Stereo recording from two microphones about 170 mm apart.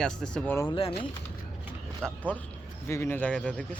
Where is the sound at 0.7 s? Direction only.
30° left (ahead or behind).